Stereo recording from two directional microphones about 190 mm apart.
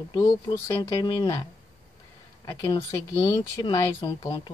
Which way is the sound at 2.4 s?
20° left (ahead or behind).